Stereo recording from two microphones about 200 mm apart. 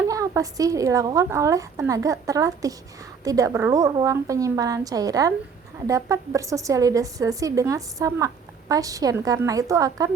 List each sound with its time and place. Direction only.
0.1 s a woman's voice: 15° right (ahead or behind)